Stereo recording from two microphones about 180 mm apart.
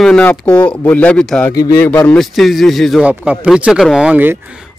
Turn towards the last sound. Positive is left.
turn(degrees=-10)  # may be behind; listen again after turning